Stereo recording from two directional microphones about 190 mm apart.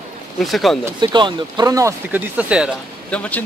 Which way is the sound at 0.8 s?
25° right (ahead or behind).